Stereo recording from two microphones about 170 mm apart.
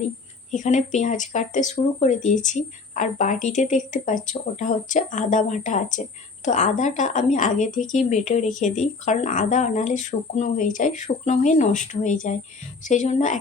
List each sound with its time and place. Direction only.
0.5 s a woman's voice: 45° left (ahead or behind)